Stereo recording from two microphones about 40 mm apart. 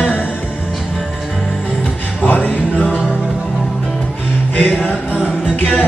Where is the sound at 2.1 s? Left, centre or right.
Left.